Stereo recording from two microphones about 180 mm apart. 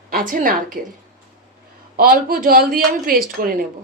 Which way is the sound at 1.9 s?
55° right (ahead or behind).